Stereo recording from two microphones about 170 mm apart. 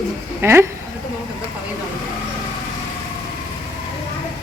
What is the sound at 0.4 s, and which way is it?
Speech, 15° right (ahead or behind).